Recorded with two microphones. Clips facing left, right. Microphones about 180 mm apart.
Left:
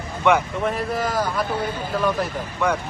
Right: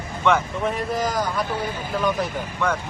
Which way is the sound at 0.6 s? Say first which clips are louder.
Right 1 dB; centre (ahead or behind).